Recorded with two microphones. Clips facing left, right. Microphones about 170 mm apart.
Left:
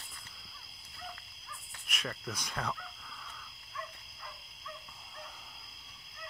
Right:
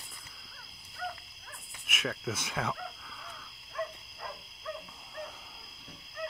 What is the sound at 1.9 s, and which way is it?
Speech, 5° right (ahead or behind).